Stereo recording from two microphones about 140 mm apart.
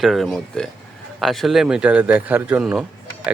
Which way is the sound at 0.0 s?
Centre (ahead or behind).